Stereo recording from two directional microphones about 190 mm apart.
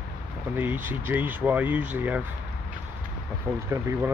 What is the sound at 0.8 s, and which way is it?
Speech, 10° right (ahead or behind).